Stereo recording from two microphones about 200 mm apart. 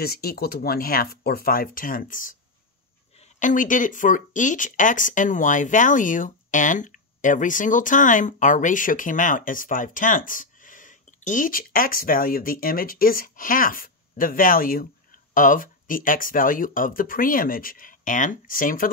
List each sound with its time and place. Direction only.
0.0 s speech: 50° left (ahead or behind)
3.3 s speech: 40° left (ahead or behind)